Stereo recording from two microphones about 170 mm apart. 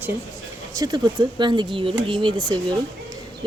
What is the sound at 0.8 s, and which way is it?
Speech, 25° right (ahead or behind).